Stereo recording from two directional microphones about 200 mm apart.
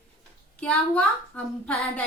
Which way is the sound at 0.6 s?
5° left (ahead or behind).